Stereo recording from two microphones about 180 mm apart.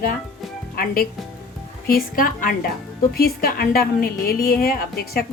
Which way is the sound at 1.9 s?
50° left (ahead or behind).